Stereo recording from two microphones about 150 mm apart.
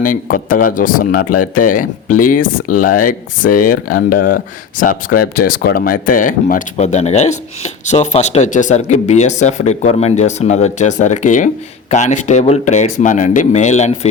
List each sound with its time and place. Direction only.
0.0 s speech: 65° left (ahead or behind)